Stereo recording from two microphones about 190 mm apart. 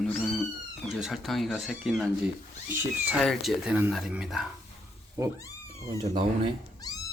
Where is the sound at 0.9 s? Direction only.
Centre (ahead or behind).